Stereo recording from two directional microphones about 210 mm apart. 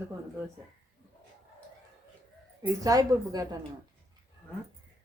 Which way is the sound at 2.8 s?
15° right (ahead or behind).